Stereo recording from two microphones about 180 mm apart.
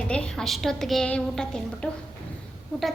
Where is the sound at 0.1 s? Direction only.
5° left (ahead or behind).